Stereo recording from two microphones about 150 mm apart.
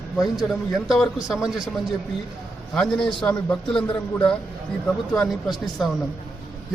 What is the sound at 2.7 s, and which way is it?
Speech, 5° left (ahead or behind).